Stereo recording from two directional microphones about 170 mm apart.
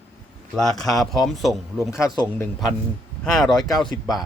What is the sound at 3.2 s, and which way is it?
Speech, centre (ahead or behind).